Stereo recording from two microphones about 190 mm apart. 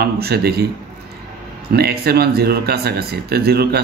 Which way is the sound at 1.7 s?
55° right (ahead or behind).